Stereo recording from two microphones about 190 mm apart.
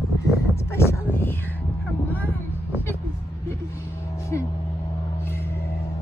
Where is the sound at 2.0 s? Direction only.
10° left (ahead or behind).